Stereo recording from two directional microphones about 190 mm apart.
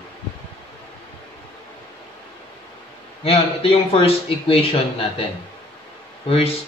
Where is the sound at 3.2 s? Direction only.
30° left (ahead or behind).